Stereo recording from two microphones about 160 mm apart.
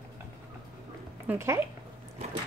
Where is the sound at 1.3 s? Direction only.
15° right (ahead or behind).